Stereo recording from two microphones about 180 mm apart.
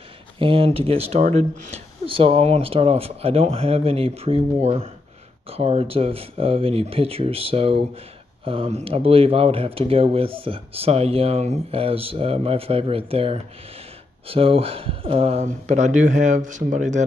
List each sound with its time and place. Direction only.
0.4 s speech: 30° right (ahead or behind)